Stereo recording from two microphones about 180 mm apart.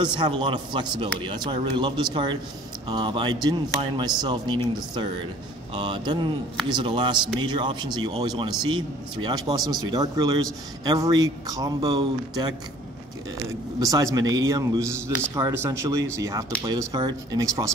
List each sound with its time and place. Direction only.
0.0 s speech: 25° right (ahead or behind)
5.8 s speech: 25° right (ahead or behind)
13.7 s a man's voice: 20° right (ahead or behind)